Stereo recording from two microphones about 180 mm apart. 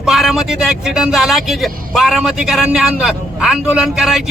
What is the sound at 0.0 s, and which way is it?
Speech, centre (ahead or behind).